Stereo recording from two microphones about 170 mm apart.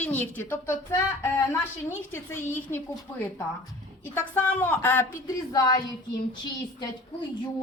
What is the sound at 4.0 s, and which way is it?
A woman's voice, 15° left (ahead or behind).